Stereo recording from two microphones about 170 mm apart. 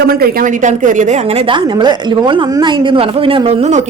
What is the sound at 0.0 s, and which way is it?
A woman's voice, 65° right (ahead or behind).